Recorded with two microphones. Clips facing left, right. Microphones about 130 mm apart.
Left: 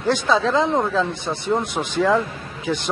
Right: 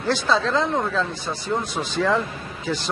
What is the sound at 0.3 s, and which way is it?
Speech, 5° left (ahead or behind).